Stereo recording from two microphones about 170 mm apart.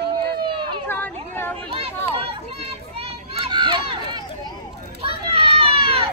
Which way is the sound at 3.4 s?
30° right (ahead or behind).